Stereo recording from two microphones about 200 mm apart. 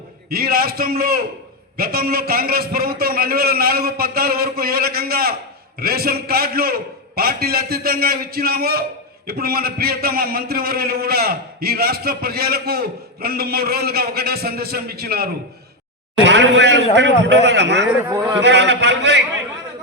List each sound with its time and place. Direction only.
0.3 s a man's voice: 50° right (ahead or behind)
18.1 s a man's voice: 15° right (ahead or behind)
18.3 s a man's voice: 60° right (ahead or behind)